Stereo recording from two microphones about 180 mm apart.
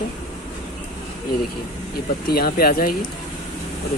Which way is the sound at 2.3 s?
60° left (ahead or behind).